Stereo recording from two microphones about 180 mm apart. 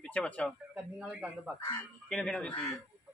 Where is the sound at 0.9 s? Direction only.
5° right (ahead or behind).